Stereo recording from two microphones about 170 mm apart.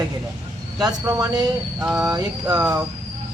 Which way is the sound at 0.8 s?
20° right (ahead or behind).